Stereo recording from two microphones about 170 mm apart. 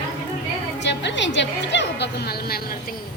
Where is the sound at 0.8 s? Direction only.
90° left.